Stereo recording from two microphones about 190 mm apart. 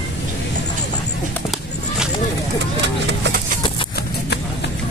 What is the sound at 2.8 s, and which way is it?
Vehicle, 65° right (ahead or behind).